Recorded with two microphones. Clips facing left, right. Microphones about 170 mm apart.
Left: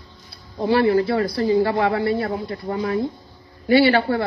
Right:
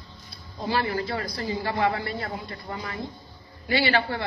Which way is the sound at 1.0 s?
65° left (ahead or behind).